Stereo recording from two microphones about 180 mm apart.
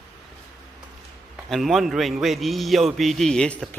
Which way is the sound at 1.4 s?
Centre (ahead or behind).